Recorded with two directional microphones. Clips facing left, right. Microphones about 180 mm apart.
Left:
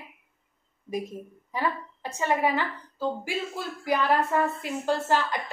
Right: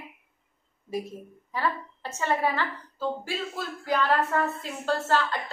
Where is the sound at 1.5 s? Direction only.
15° left (ahead or behind).